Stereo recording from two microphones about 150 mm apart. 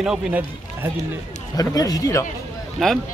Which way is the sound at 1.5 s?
25° left (ahead or behind).